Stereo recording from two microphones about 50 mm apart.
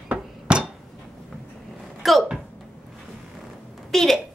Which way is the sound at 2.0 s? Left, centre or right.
Centre.